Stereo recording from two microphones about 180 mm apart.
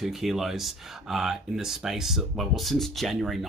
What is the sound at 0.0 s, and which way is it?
Speech, centre (ahead or behind).